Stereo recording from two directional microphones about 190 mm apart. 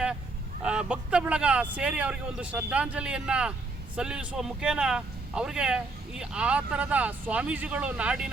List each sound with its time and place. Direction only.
0.6 s speech: 5° right (ahead or behind)